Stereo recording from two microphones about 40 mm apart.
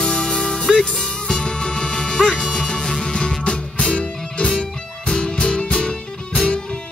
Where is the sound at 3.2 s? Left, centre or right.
Left.